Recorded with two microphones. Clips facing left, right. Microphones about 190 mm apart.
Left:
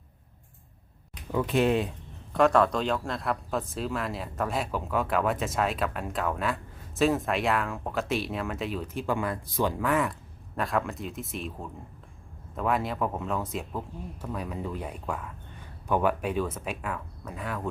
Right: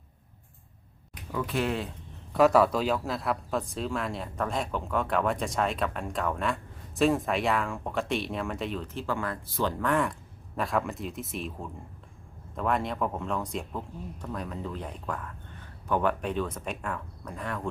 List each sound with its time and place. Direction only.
1.3 s speech: 20° left (ahead or behind)
2.3 s speech: 5° right (ahead or behind)